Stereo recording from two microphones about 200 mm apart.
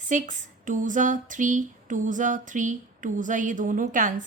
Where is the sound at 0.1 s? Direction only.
40° right (ahead or behind).